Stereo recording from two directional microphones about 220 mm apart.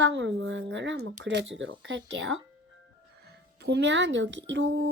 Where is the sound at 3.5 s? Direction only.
50° right (ahead or behind).